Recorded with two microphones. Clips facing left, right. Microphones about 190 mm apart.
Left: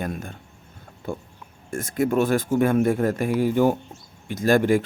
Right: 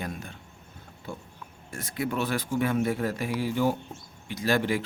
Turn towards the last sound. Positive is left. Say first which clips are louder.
# left 7 dB
turn(degrees=50)  # may be behind; listen again after turning